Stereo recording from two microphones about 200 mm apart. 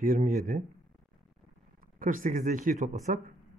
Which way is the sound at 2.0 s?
45° right (ahead or behind).